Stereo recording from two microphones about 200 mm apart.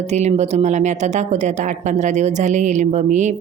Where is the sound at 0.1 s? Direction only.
35° right (ahead or behind).